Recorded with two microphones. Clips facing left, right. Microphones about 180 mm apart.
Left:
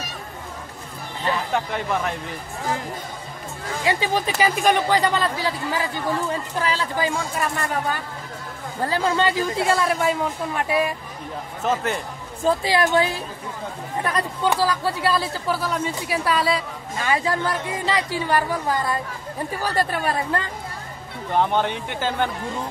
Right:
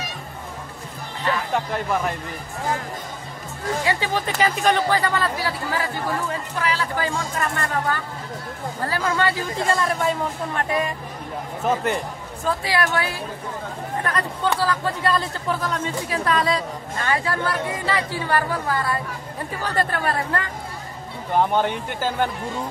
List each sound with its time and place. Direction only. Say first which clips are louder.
1.5 s speech: right 1 dB; 5° right (ahead or behind)
3.8 s speech: left 4 dB; 15° left (ahead or behind)
6.6 s a woman's voice: right 1 dB; 30° left (ahead or behind)
7.0 s speech: left 1 dB; 15° left (ahead or behind)
9.7 s speech: right 1 dB; 5° left (ahead or behind)
11.6 s speech: right 1 dB; 10° right (ahead or behind)
12.4 s a woman's voice: left 3 dB; 20° left (ahead or behind)
14.0 s speech: left 2 dB; 10° left (ahead or behind)
17.1 s speech: left 1 dB; 15° left (ahead or behind)
21.3 s speech: right 1 dB; 10° right (ahead or behind)